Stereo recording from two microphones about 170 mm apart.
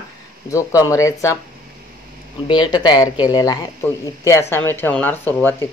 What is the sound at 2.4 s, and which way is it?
Speech, 25° left (ahead or behind).